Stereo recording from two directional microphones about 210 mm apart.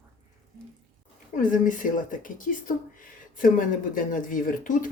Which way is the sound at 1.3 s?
40° left (ahead or behind).